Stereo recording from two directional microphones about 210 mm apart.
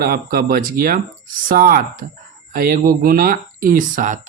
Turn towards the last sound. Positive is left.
turn(degrees=-40)  # may be behind; listen again after turning